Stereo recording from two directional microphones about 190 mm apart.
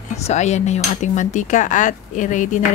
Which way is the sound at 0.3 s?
35° left (ahead or behind).